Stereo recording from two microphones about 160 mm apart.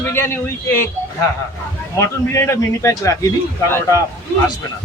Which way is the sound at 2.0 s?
15° left (ahead or behind).